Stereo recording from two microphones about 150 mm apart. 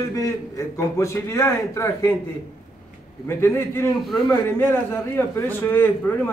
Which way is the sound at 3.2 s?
15° left (ahead or behind).